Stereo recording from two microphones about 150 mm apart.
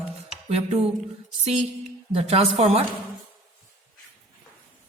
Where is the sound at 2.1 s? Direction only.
45° right (ahead or behind).